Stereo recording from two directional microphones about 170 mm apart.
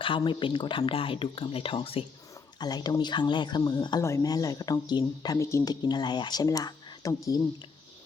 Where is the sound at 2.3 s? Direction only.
20° left (ahead or behind).